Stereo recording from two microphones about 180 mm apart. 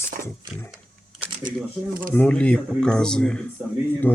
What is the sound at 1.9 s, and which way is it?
Speech, 50° right (ahead or behind).